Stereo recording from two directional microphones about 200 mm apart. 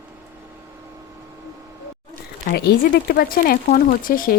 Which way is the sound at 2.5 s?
50° left (ahead or behind).